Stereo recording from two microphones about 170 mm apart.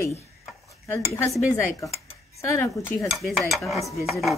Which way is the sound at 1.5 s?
20° left (ahead or behind).